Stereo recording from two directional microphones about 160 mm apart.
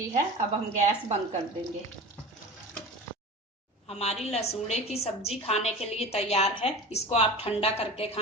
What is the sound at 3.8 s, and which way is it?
A woman's voice, 40° left (ahead or behind).